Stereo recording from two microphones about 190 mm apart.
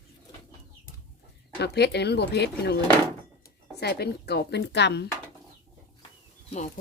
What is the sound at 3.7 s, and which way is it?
A woman's voice, 60° left (ahead or behind).